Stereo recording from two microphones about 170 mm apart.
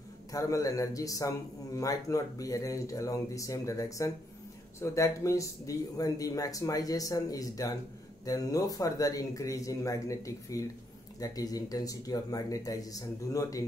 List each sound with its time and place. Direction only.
0.3 s speech: 20° left (ahead or behind)